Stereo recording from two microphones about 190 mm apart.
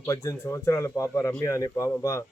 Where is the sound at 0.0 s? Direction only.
15° left (ahead or behind).